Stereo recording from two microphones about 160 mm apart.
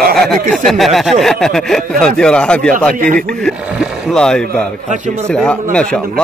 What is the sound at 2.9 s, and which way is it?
Speech, 55° right (ahead or behind).